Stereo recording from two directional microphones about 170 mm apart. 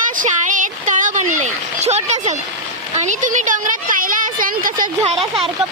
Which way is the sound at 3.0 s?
45° right (ahead or behind).